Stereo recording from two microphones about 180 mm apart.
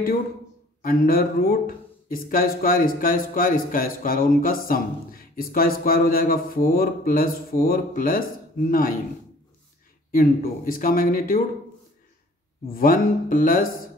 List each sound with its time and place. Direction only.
0.8 s speech: 55° left (ahead or behind)
10.1 s speech: 50° left (ahead or behind)
12.7 s speech: 50° left (ahead or behind)